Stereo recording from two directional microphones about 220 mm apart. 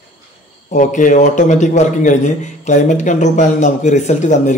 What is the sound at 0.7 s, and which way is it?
A man's voice, 35° left (ahead or behind).